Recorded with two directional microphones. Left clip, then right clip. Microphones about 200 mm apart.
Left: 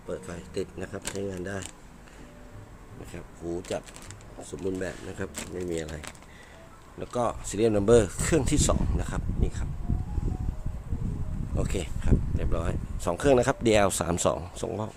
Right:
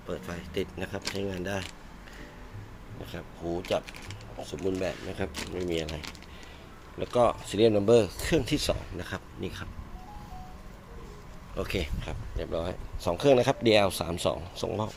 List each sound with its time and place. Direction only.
0.1 s speech: 5° left (ahead or behind)
3.1 s speech: 10° left (ahead or behind)
7.0 s speech: 10° left (ahead or behind)
11.5 s speech: 10° left (ahead or behind); by 14.7 s 30° left (ahead or behind)